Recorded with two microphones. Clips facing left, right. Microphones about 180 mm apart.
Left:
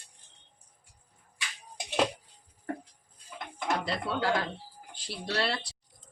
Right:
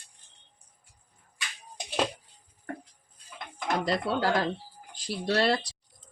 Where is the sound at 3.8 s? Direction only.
40° right (ahead or behind).